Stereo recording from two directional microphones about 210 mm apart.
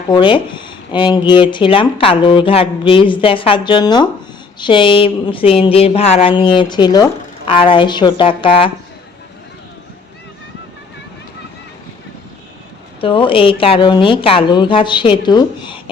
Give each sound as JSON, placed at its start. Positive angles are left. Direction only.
{"t": 0.1, "sound": "speech", "side_deg": 20}
{"t": 13.0, "sound": "speech", "side_deg": 25}